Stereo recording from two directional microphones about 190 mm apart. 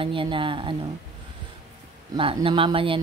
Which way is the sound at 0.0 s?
25° right (ahead or behind).